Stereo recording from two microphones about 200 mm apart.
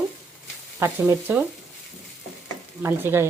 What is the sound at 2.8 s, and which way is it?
Stir, 10° right (ahead or behind).